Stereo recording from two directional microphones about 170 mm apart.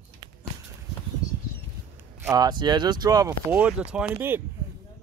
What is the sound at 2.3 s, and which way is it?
Speech, 25° right (ahead or behind).